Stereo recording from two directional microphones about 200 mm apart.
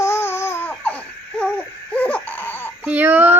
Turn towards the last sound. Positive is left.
turn(degrees=-10)  # may be behind; listen again after turning